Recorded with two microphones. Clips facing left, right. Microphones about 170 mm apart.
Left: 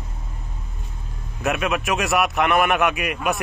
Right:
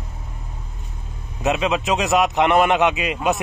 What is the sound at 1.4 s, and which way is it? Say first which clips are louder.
A man's voice: right 2 dB; 20° right (ahead or behind).